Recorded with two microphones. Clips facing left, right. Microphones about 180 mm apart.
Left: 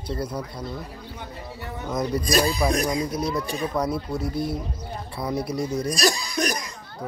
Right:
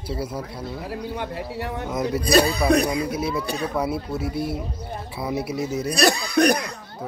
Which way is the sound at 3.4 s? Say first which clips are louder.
Right 1 dB; 70° right (ahead or behind).